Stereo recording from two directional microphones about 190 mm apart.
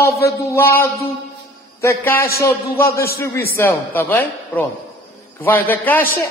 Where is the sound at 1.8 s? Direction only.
15° left (ahead or behind).